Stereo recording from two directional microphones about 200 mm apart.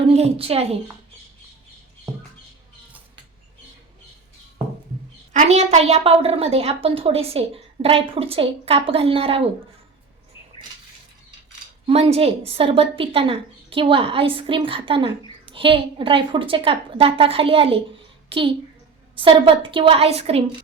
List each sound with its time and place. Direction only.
0.1 s a woman's voice: 30° right (ahead or behind)
5.3 s a woman's voice: 35° right (ahead or behind)
11.9 s a woman's voice: 30° right (ahead or behind)